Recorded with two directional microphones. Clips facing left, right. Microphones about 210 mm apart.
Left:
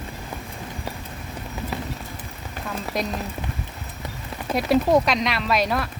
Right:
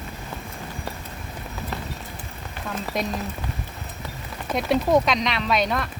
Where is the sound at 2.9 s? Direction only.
Centre (ahead or behind).